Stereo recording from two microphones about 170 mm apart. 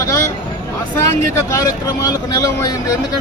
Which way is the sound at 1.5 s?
20° left (ahead or behind).